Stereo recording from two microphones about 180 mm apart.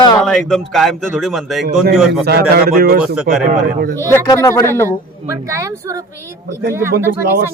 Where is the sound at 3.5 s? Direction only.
50° right (ahead or behind).